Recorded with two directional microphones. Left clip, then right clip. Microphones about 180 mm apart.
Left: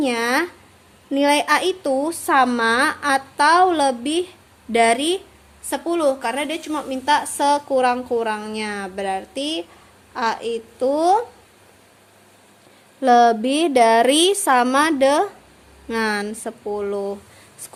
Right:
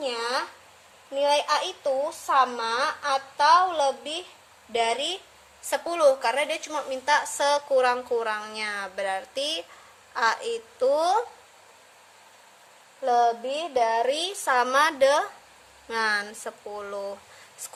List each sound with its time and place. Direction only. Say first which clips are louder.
0.0 s a woman's voice: left 8 dB; 45° left (ahead or behind)
5.6 s a woman's voice: left 1 dB; 5° left (ahead or behind)
13.0 s a woman's voice: left 8 dB; 50° left (ahead or behind); by 14.5 s 35° left (ahead or behind)
14.5 s a woman's voice: left 1 dB; 20° left (ahead or behind)